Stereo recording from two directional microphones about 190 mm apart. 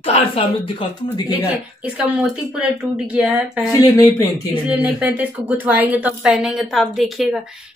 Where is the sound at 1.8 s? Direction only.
5° right (ahead or behind).